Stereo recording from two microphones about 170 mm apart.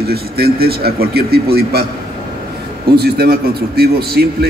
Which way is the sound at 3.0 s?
65° right (ahead or behind).